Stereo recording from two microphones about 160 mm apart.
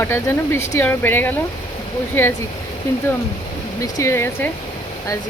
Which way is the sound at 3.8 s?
20° left (ahead or behind).